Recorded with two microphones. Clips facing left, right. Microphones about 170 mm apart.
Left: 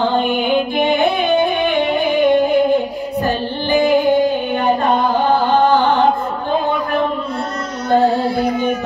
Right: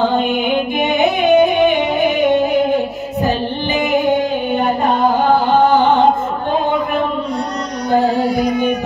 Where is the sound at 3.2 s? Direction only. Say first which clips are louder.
Right 2 dB; 20° right (ahead or behind).